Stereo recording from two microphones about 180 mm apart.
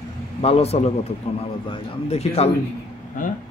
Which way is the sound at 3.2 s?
50° left (ahead or behind).